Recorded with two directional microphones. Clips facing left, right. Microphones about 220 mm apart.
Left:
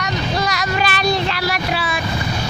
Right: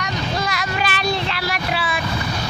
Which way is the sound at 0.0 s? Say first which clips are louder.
Left 3 dB; 40° left (ahead or behind).